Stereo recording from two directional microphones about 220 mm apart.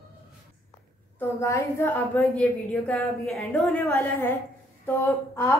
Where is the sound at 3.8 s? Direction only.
10° left (ahead or behind).